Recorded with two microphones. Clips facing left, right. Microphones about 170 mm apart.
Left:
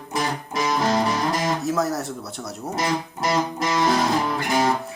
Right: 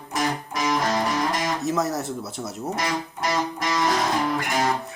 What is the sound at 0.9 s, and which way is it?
Music, 30° left (ahead or behind).